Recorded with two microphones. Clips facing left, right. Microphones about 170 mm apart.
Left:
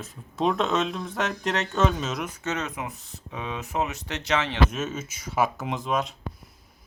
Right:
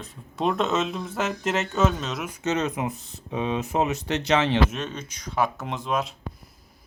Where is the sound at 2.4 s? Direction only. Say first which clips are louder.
Right 5 dB; 20° right (ahead or behind).